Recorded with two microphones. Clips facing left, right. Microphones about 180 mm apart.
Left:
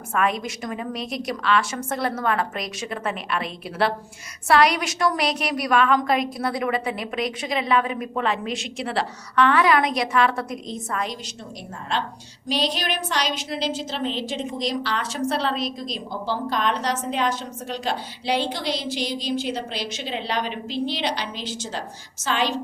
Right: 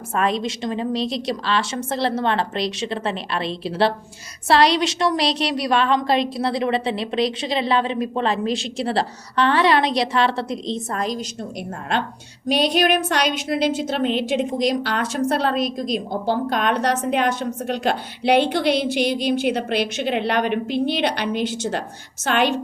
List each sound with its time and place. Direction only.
0.1 s a woman's voice: 30° right (ahead or behind)
12.5 s a woman's voice: 60° right (ahead or behind)